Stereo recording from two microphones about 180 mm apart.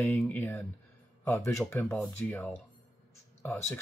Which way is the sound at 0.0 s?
10° left (ahead or behind).